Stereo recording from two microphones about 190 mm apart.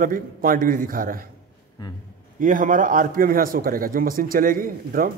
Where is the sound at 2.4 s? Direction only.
45° right (ahead or behind).